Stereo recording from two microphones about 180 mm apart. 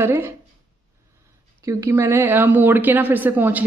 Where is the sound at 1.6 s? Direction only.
15° right (ahead or behind).